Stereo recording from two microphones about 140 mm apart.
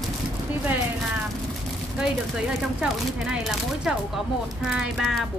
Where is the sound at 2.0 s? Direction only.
5° right (ahead or behind).